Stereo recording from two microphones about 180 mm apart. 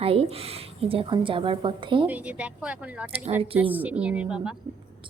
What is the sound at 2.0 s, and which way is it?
Speech, 5° right (ahead or behind).